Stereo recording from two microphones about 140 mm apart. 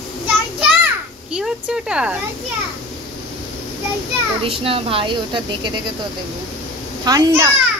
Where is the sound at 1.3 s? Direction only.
5° right (ahead or behind).